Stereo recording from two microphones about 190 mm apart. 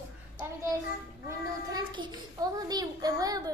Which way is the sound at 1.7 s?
25° right (ahead or behind).